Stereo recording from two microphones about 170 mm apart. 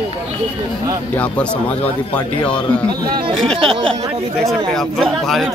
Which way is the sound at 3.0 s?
25° right (ahead or behind).